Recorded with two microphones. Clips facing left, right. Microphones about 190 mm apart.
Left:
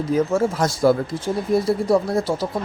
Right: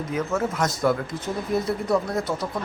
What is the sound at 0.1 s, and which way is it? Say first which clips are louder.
A man's voice: left 7 dB; 35° left (ahead or behind).